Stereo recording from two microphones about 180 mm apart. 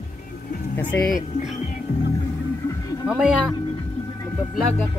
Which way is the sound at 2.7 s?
20° left (ahead or behind).